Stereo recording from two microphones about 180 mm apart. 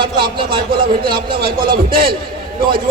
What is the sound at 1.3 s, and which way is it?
Speech, 55° right (ahead or behind).